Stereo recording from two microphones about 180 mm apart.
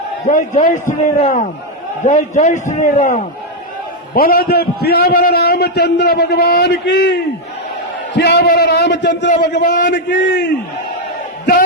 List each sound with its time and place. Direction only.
0.3 s a man's voice: 45° left (ahead or behind)
4.1 s a man's voice: 55° left (ahead or behind); by 9.3 s 70° left (ahead or behind)
9.6 s a man's voice: 45° left (ahead or behind)
9.9 s a man's voice: 75° left (ahead or behind)